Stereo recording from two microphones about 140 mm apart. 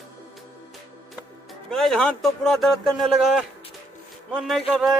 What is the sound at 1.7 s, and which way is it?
Speech, 5° left (ahead or behind).